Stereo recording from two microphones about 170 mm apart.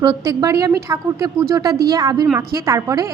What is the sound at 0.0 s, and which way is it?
A woman's voice, 20° right (ahead or behind).